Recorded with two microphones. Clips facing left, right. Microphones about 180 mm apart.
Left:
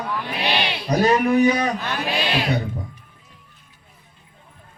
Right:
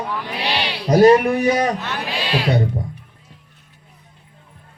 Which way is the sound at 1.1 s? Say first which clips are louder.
Right 3 dB; 30° right (ahead or behind).